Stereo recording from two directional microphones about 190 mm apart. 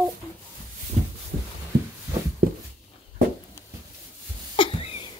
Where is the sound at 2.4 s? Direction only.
50° right (ahead or behind).